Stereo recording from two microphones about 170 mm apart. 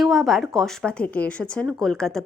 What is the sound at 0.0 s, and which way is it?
A woman's voice, centre (ahead or behind).